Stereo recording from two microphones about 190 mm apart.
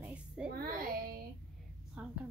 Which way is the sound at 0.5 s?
50° right (ahead or behind).